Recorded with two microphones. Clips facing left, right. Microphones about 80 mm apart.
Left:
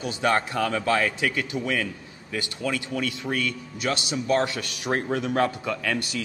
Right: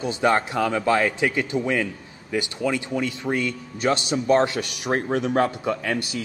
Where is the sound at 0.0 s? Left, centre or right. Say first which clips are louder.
Right 3 dB; right.